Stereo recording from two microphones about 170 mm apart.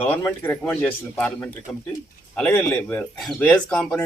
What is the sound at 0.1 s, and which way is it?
Speech, 10° left (ahead or behind).